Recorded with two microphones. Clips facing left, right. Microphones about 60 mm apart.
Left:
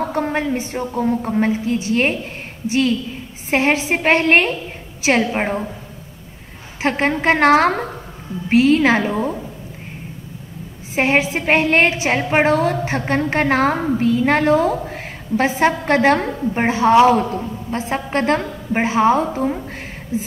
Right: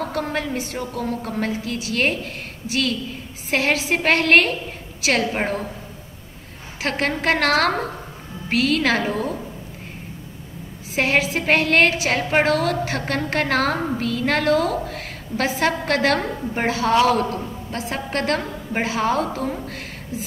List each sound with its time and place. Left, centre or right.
0.0 s a woman's voice: left
6.8 s a woman's voice: left
11.0 s a woman's voice: left